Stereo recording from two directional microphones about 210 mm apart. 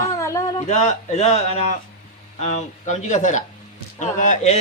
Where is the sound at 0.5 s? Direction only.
35° left (ahead or behind).